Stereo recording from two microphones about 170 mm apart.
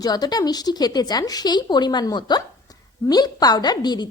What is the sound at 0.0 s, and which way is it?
A woman's voice, 25° left (ahead or behind).